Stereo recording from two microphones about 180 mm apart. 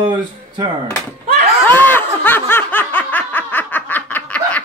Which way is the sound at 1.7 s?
10° left (ahead or behind).